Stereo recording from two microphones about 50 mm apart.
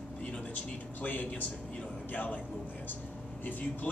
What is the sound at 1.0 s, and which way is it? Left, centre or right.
A man's voice, left.